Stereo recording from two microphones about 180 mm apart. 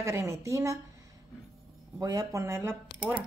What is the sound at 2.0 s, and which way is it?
Speech, 20° right (ahead or behind).